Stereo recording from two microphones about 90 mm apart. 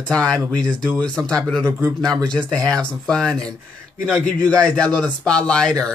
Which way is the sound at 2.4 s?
5° left (ahead or behind).